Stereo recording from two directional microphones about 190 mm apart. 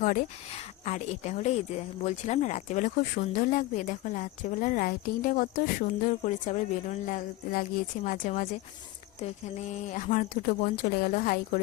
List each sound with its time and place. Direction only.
0.0 s speech: 45° left (ahead or behind)